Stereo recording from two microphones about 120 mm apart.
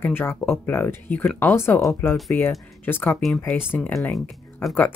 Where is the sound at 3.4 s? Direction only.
15° left (ahead or behind).